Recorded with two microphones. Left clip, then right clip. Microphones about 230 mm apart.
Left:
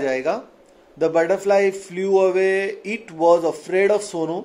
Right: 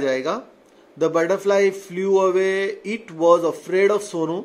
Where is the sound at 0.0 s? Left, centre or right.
Centre.